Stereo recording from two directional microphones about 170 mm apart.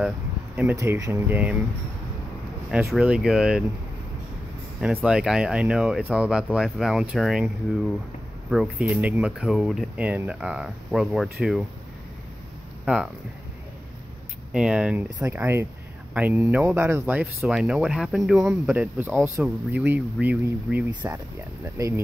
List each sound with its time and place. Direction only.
0.6 s speech: 15° right (ahead or behind)
2.9 s speech: 5° right (ahead or behind)
5.0 s speech: 5° right (ahead or behind)
12.8 s speech: 5° right (ahead or behind)
14.5 s speech: 5° right (ahead or behind)
15.0 s speech: 20° right (ahead or behind)